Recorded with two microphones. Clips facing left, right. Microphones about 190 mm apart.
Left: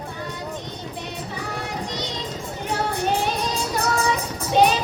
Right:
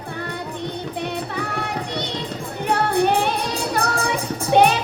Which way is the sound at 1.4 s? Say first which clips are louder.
Right 3 dB; 60° right (ahead or behind).